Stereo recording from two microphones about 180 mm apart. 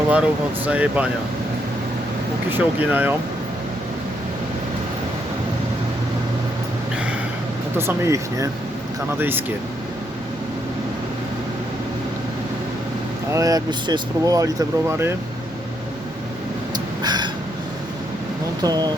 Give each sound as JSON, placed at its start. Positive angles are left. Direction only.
{"t": 0.1, "sound": "speech", "side_deg": -5}
{"t": 2.5, "sound": "speech", "side_deg": -10}
{"t": 7.8, "sound": "speech", "side_deg": -15}
{"t": 13.3, "sound": "speech", "side_deg": -20}
{"t": 16.7, "sound": "a sound", "side_deg": -25}
{"t": 18.6, "sound": "speech", "side_deg": -20}